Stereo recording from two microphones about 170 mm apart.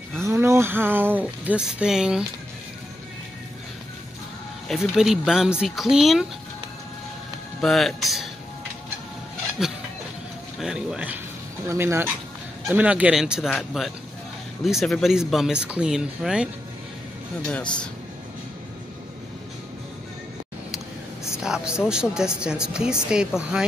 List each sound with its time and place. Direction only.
0.2 s speech: 15° right (ahead or behind)
4.6 s speech: centre (ahead or behind)
7.6 s speech: centre (ahead or behind)
9.6 s speech: centre (ahead or behind)
11.6 s speech: 15° right (ahead or behind)
21.4 s speech: 5° right (ahead or behind)